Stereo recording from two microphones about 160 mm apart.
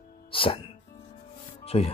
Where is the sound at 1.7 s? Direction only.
40° left (ahead or behind).